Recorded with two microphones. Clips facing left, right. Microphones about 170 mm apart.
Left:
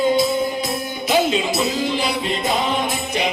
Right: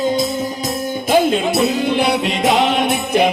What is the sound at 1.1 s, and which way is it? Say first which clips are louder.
Music: right 4 dB; 55° right (ahead or behind).